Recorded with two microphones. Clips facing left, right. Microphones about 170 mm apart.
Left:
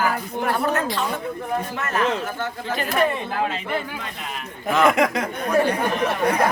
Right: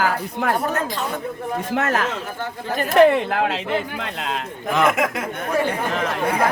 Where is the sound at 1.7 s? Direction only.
80° right.